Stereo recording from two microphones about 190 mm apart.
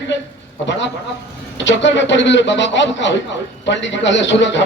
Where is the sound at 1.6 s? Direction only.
70° left (ahead or behind).